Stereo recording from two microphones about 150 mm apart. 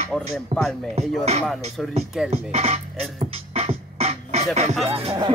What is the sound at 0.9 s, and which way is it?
Speech, 45° right (ahead or behind).